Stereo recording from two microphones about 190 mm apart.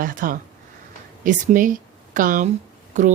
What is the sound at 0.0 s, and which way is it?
A woman's voice, 45° right (ahead or behind).